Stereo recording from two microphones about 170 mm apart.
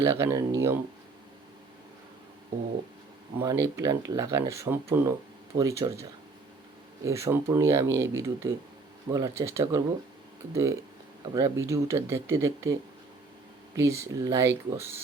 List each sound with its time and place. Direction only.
0.0 s speech: 15° right (ahead or behind)
3.3 s speech: 20° right (ahead or behind)
7.0 s speech: 15° right (ahead or behind)
13.7 s speech: 15° right (ahead or behind)